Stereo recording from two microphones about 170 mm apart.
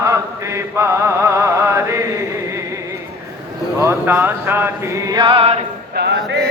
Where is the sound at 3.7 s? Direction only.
15° right (ahead or behind); by 5.6 s 35° right (ahead or behind).